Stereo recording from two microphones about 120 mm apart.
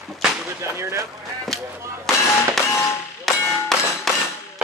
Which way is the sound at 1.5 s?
Centre (ahead or behind).